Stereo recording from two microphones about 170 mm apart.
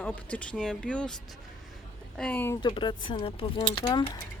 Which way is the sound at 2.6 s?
25° left (ahead or behind).